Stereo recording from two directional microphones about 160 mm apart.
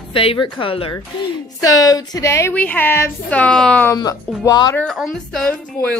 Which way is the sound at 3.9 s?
20° left (ahead or behind).